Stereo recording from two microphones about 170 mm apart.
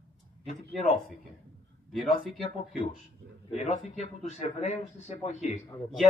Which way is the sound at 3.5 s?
40° left (ahead or behind).